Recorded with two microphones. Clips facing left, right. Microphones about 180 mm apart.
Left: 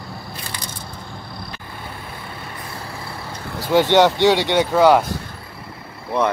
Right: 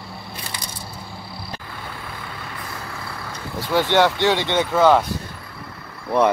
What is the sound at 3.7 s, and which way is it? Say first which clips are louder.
Speech: left 3 dB; 20° left (ahead or behind).